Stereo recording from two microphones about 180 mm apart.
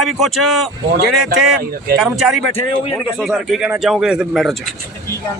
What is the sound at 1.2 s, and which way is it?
Speech, 55° right (ahead or behind).